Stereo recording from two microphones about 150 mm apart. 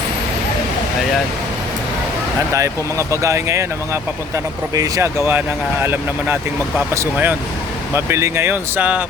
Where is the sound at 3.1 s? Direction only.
20° right (ahead or behind).